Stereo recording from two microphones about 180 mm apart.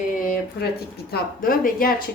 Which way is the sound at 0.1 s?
50° left (ahead or behind).